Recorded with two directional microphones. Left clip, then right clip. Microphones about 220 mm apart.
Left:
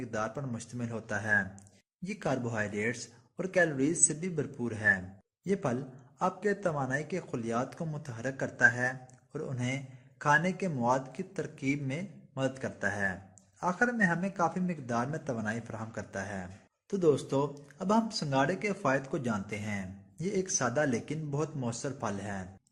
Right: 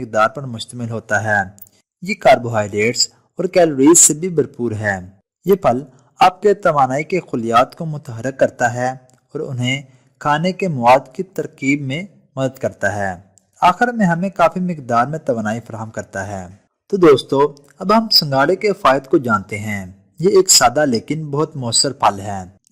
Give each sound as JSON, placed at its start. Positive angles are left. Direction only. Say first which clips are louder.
{"t": 0.0, "sound": "a man's voice", "louder": "right 19 dB", "side_deg": -40}